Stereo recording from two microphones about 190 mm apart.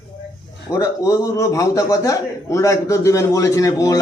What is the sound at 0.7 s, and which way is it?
A man's voice, 15° left (ahead or behind).